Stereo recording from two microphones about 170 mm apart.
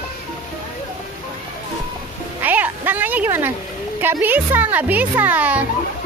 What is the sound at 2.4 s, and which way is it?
Speech, 10° right (ahead or behind).